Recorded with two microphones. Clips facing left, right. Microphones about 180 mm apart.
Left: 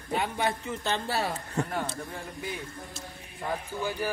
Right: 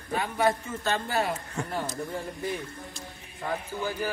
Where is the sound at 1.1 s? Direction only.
30° left (ahead or behind).